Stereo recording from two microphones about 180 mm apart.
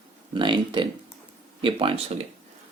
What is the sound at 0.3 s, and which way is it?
Speech, 25° right (ahead or behind).